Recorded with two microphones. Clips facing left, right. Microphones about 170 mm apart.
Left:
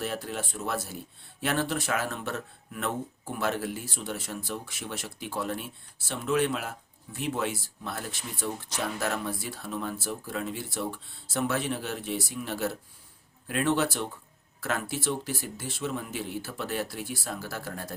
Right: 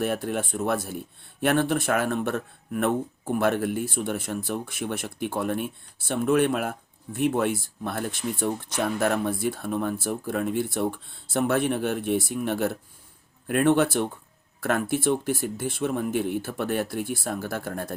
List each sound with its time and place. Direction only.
0.0 s speech: 55° right (ahead or behind)